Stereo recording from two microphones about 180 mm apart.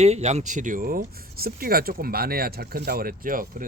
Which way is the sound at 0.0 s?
35° right (ahead or behind).